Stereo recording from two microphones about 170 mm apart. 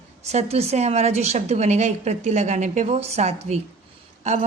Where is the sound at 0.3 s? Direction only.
40° right (ahead or behind).